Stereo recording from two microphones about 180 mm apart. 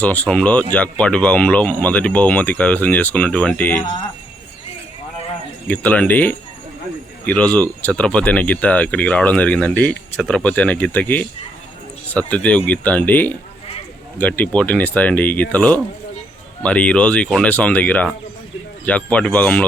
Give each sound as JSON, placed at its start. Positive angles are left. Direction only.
{"t": 0.0, "sound": "speech", "side_deg": 10}
{"t": 5.6, "sound": "speech", "side_deg": 10}